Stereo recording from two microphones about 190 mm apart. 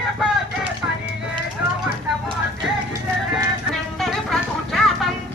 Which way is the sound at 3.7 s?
Centre (ahead or behind).